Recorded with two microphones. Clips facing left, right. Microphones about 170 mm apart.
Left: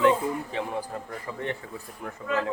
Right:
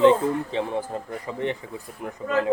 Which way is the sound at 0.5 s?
25° right (ahead or behind).